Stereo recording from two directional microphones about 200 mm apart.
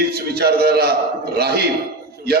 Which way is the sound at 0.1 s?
50° right (ahead or behind).